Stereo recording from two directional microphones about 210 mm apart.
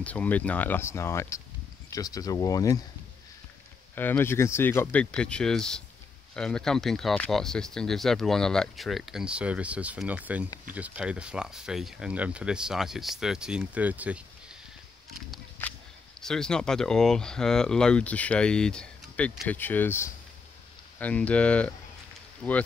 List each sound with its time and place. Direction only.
0.0 s speech: 5° left (ahead or behind)
3.9 s speech: 10° left (ahead or behind); by 14.2 s 5° right (ahead or behind)
15.1 s a sound: centre (ahead or behind)
16.2 s speech: 5° left (ahead or behind)